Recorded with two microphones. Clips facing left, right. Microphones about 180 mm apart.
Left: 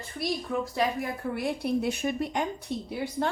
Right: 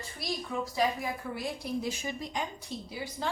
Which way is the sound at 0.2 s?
55° left (ahead or behind).